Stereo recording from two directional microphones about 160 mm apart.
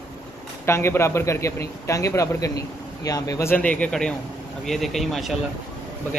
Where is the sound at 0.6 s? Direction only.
15° left (ahead or behind).